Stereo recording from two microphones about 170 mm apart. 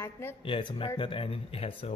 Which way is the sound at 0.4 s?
30° left (ahead or behind).